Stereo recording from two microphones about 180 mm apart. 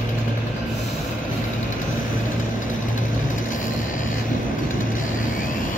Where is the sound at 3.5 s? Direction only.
45° left (ahead or behind).